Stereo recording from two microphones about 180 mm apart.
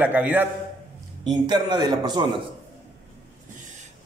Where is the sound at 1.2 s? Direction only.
25° right (ahead or behind).